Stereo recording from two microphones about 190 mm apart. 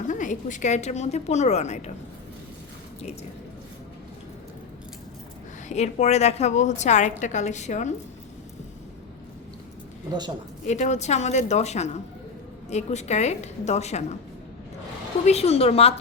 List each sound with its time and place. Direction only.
0.1 s a woman's voice: 40° left (ahead or behind)
5.6 s a woman's voice: 35° left (ahead or behind)
10.7 s a woman's voice: 35° left (ahead or behind)
15.2 s a woman's voice: 35° left (ahead or behind)